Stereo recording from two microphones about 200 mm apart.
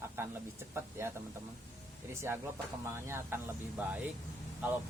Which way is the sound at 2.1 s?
15° right (ahead or behind).